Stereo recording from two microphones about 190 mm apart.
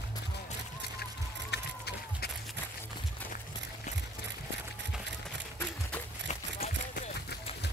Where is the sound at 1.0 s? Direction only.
55° left (ahead or behind).